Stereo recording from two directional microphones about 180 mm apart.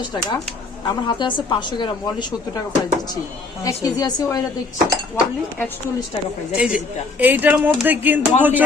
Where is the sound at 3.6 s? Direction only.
20° left (ahead or behind).